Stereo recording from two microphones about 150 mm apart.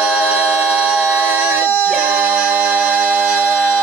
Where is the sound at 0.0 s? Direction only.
10° right (ahead or behind).